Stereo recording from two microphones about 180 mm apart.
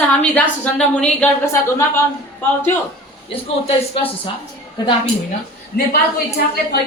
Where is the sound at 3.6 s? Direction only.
30° left (ahead or behind).